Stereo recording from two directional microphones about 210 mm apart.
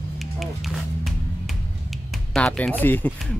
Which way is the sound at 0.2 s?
Centre (ahead or behind).